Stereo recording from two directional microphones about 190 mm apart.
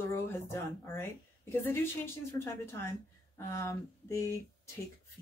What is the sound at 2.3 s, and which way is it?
Speech, 15° left (ahead or behind).